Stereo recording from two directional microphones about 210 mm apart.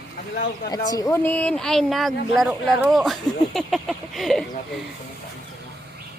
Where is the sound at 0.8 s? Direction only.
15° left (ahead or behind).